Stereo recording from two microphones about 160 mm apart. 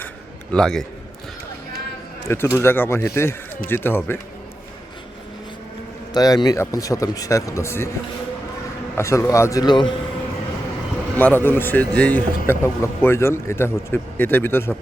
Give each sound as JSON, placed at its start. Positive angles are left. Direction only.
{"t": 0.5, "sound": "a man's voice", "side_deg": 5}
{"t": 2.2, "sound": "speech", "side_deg": 15}
{"t": 6.1, "sound": "speech", "side_deg": 25}
{"t": 9.0, "sound": "speech", "side_deg": 20}
{"t": 11.2, "sound": "speech", "side_deg": 10}